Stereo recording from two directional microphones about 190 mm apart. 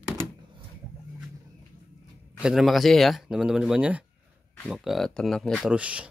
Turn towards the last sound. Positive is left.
turn(degrees=-5)  # may be behind; listen again after turning